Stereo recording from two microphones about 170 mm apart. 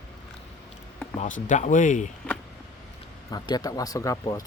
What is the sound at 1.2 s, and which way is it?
Speech, 50° left (ahead or behind).